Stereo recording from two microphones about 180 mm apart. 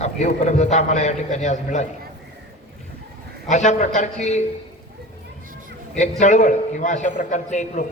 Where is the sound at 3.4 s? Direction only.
40° left (ahead or behind).